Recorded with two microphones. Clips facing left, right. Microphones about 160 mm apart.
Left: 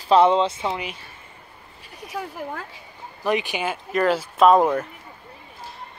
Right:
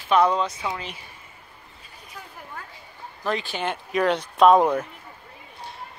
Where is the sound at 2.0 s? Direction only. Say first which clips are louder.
Left 12 dB; 85° left.